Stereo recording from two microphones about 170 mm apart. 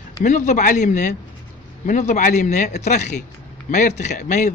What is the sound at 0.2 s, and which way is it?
Speech, 45° left (ahead or behind).